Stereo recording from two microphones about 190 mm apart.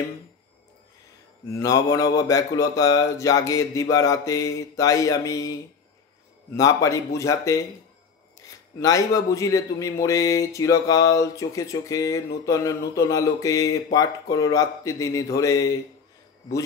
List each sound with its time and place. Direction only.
1.6 s speech: 15° left (ahead or behind)
8.7 s speech: 20° left (ahead or behind)